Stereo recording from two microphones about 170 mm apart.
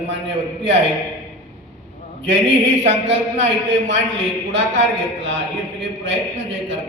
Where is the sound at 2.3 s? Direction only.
90° right.